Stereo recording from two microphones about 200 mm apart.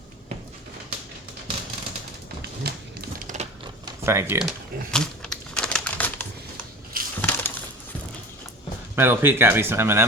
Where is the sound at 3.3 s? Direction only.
40° right (ahead or behind).